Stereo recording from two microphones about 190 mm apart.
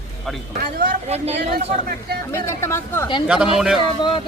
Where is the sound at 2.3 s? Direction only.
15° left (ahead or behind).